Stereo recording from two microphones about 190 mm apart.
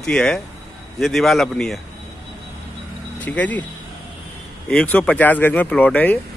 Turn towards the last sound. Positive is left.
turn(degrees=10)  # may be behind; listen again after turning